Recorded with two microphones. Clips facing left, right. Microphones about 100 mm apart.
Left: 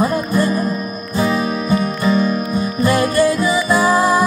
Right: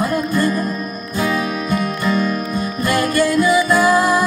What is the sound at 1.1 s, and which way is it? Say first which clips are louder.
Music: left 2 dB; 25° left (ahead or behind).